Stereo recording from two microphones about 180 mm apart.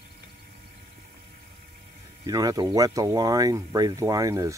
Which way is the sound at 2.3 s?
20° right (ahead or behind).